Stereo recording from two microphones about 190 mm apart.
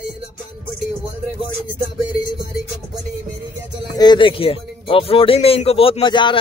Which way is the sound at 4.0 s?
25° left (ahead or behind).